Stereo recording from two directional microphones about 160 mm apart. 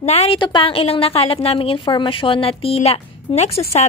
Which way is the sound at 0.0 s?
40° left (ahead or behind).